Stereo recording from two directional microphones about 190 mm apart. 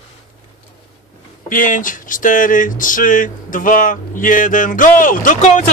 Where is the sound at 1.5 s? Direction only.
45° left (ahead or behind).